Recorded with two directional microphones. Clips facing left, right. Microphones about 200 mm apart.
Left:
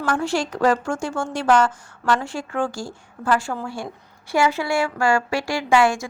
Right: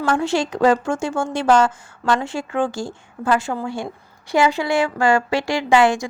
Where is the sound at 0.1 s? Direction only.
20° right (ahead or behind).